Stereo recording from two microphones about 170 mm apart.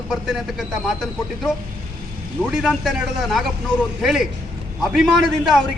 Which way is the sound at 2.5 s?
Centre (ahead or behind).